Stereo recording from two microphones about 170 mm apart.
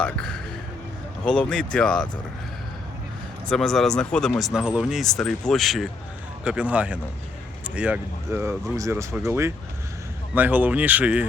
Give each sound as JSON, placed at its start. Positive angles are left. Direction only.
{"t": 0.0, "sound": "speech", "side_deg": 5}
{"t": 1.4, "sound": "speech", "side_deg": 5}
{"t": 3.5, "sound": "speech", "side_deg": 0}